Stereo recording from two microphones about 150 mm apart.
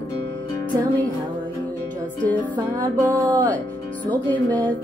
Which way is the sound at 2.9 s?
25° right (ahead or behind).